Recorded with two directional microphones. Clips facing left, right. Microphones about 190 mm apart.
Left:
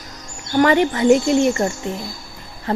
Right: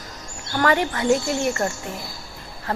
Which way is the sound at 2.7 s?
20° left (ahead or behind).